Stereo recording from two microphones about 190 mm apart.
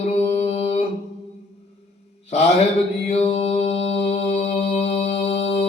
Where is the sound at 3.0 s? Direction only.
35° left (ahead or behind).